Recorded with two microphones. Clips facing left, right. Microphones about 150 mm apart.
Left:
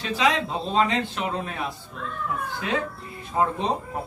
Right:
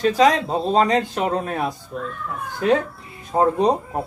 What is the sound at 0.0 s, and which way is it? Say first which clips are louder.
Speech: right 7 dB; 45° right (ahead or behind).